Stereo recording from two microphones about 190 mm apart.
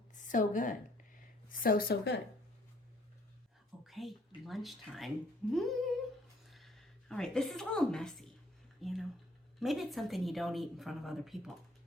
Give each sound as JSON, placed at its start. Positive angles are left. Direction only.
{"t": 0.3, "sound": "a woman's voice", "side_deg": 45}
{"t": 3.8, "sound": "a sound", "side_deg": 0}
{"t": 4.4, "sound": "a woman's voice", "side_deg": 0}